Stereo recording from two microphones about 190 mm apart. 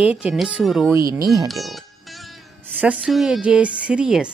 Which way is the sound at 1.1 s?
20° right (ahead or behind).